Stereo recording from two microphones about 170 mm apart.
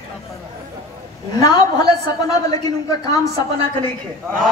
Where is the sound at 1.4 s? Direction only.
20° left (ahead or behind).